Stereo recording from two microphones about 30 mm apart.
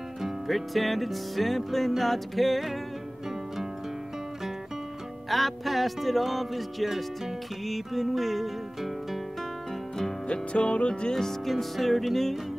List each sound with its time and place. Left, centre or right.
0.5 s music: centre
5.3 s music: centre
10.2 s music: left
11.4 s music: centre